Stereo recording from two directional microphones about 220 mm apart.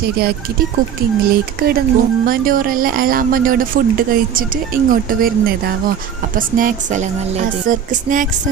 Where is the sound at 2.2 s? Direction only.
40° right (ahead or behind).